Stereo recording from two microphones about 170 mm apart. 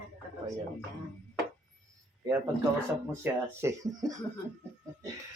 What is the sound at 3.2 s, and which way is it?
Speech, 15° right (ahead or behind).